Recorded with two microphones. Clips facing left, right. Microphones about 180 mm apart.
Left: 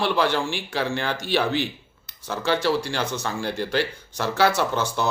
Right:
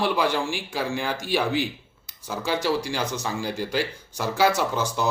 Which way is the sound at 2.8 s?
15° right (ahead or behind).